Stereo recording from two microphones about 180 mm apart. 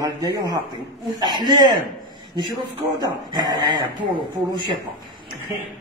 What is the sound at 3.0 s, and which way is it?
Speech, 20° right (ahead or behind).